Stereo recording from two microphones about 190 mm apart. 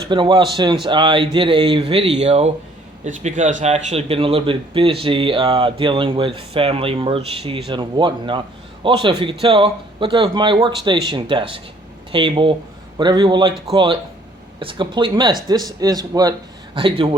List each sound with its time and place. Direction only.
0.1 s speech: 25° right (ahead or behind)